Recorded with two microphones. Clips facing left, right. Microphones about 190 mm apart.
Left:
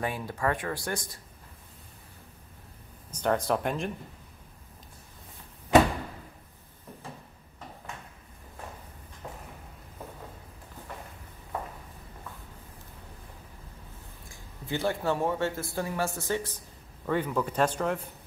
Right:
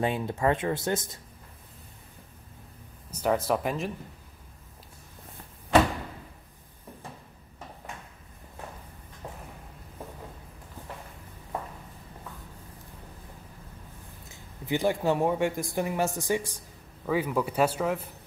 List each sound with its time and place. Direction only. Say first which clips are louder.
0.0 s speech: right 4 dB; 20° right (ahead or behind)
3.1 s speech: right 1 dB; 5° right (ahead or behind)
14.3 s speech: right 4 dB; 15° right (ahead or behind)